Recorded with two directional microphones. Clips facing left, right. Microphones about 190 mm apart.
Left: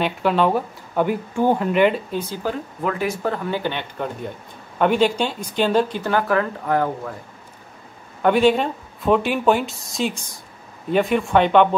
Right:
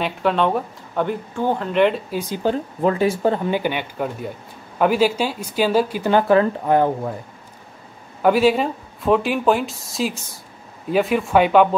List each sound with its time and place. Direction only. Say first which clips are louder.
0.0 s speech: left 1 dB; centre (ahead or behind)
2.1 s speech: right 3 dB; 15° right (ahead or behind)
2.8 s speech: right 5 dB; 30° right (ahead or behind)
3.4 s speech: right 3 dB; 15° right (ahead or behind)
6.1 s speech: right 5 dB; 25° right (ahead or behind)
8.2 s speech: even; 5° right (ahead or behind)